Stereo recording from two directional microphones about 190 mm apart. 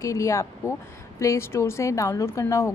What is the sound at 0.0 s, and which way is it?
A woman's voice, 15° left (ahead or behind).